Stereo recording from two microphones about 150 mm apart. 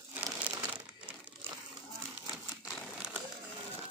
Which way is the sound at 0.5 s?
10° right (ahead or behind).